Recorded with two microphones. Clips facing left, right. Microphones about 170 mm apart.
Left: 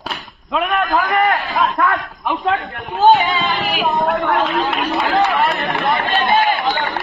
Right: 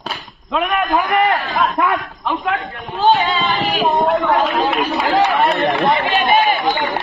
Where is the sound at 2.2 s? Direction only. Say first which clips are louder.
Left 2 dB; 15° left (ahead or behind).